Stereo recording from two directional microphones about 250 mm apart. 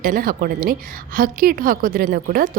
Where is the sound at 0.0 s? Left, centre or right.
Right.